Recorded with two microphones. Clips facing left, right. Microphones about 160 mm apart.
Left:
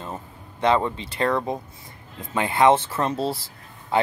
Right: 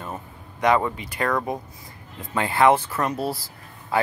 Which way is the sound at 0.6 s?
25° left (ahead or behind).